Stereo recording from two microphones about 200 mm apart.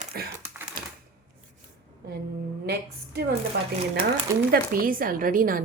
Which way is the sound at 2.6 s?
55° right (ahead or behind).